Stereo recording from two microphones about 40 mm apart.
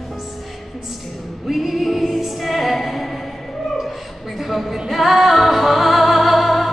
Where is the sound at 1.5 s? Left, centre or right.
Centre.